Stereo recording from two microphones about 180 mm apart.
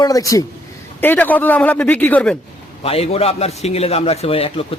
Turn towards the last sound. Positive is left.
turn(degrees=30)  # may be behind; listen again after turning